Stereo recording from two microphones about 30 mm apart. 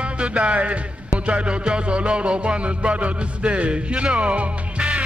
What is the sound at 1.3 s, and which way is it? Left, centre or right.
Music, right.